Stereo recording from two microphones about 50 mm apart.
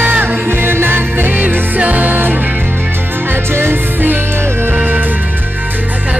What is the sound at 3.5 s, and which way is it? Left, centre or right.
Music, right.